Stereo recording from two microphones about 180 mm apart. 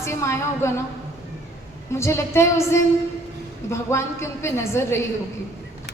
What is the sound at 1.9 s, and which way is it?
A woman's voice, 15° left (ahead or behind).